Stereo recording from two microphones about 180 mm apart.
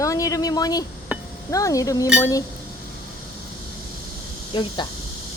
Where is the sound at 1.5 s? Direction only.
20° left (ahead or behind).